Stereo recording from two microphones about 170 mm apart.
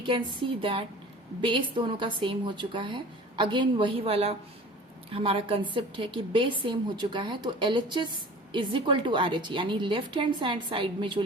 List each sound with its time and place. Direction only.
0.6 s a woman's voice: 35° right (ahead or behind)